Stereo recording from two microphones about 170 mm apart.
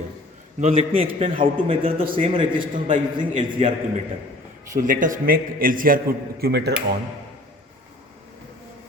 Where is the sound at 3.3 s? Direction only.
50° right (ahead or behind).